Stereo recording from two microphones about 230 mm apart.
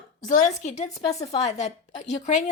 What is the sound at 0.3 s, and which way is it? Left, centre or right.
A woman's voice, left.